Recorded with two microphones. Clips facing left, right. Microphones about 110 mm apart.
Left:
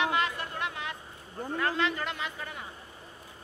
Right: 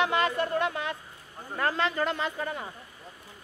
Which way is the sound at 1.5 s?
40° right (ahead or behind).